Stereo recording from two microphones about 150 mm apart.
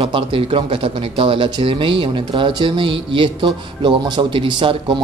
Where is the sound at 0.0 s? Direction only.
35° right (ahead or behind).